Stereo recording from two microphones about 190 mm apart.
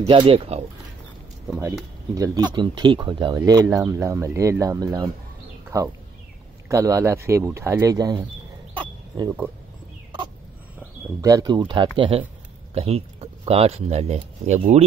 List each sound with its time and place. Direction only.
0.0 s speech: 30° right (ahead or behind)
2.1 s speech: 20° right (ahead or behind)
3.3 s speech: 15° right (ahead or behind)
8.7 s bird: 25° right (ahead or behind)
11.1 s speech: 20° right (ahead or behind); by 14.8 s 35° right (ahead or behind)